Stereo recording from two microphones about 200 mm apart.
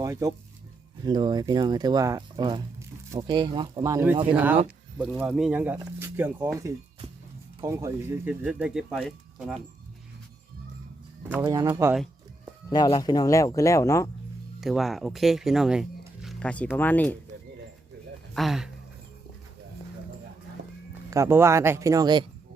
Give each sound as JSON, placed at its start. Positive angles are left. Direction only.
{"t": 0.0, "sound": "speech", "side_deg": -15}
{"t": 11.2, "sound": "speech", "side_deg": -10}
{"t": 12.7, "sound": "speech", "side_deg": 20}
{"t": 14.6, "sound": "speech", "side_deg": 0}
{"t": 18.3, "sound": "speech", "side_deg": 0}
{"t": 21.1, "sound": "speech", "side_deg": -15}